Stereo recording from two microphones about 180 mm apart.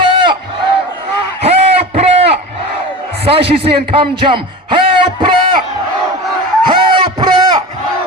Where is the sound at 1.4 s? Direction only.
35° right (ahead or behind).